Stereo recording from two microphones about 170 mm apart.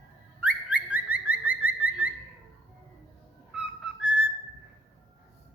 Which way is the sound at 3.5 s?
5° right (ahead or behind).